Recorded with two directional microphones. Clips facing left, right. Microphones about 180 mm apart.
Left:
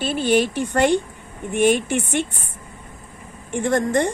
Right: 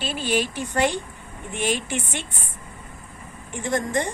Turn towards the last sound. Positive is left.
turn(degrees=60)  # may be behind; listen again after turning